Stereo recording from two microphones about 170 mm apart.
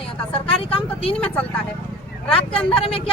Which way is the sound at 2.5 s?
35° left (ahead or behind).